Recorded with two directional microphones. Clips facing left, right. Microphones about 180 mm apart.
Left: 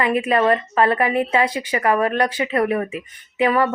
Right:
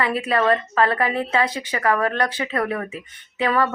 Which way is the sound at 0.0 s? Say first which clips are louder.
Left 3 dB; 15° left (ahead or behind).